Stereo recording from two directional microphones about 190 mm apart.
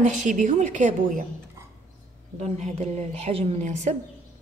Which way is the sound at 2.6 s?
35° right (ahead or behind).